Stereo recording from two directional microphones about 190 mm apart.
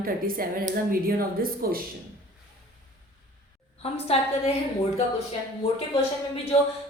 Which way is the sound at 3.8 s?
30° left (ahead or behind).